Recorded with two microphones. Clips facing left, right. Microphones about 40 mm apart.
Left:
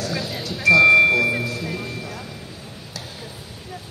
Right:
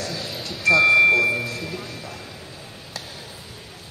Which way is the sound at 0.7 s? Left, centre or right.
Centre.